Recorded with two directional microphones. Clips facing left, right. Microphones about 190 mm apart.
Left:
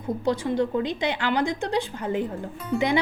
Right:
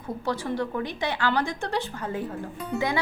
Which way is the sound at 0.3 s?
20° left (ahead or behind).